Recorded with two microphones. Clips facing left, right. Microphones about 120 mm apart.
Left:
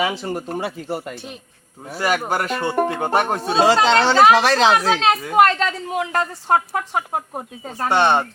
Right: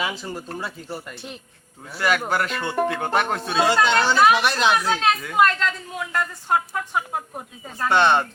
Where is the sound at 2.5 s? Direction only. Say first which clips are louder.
Left 3 dB; 15° left (ahead or behind).